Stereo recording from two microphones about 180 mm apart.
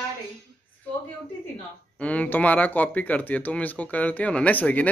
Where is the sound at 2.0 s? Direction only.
5° left (ahead or behind).